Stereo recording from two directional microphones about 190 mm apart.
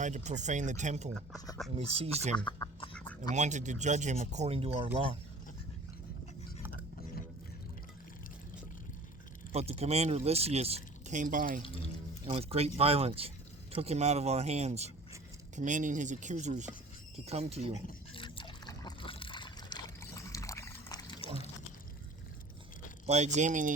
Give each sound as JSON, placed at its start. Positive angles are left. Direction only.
{"t": 0.0, "sound": "speech", "side_deg": -40}
{"t": 2.6, "sound": "duck", "side_deg": 20}
{"t": 3.3, "sound": "speech", "side_deg": -40}
{"t": 9.5, "sound": "speech", "side_deg": -30}
{"t": 11.6, "sound": "speech", "side_deg": 30}
{"t": 12.2, "sound": "speech", "side_deg": -30}
{"t": 18.1, "sound": "a sound", "side_deg": 25}
{"t": 23.0, "sound": "speech", "side_deg": -35}